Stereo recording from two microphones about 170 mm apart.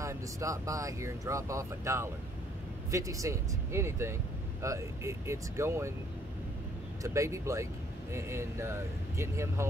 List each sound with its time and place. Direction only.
0.0 s speech: 20° right (ahead or behind)
7.0 s speech: 15° right (ahead or behind)